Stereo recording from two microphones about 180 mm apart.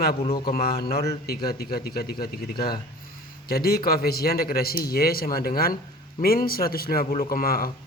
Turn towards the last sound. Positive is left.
turn(degrees=55)  # may be behind; listen again after turning